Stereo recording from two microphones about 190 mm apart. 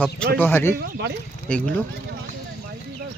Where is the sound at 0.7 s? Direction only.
60° right (ahead or behind).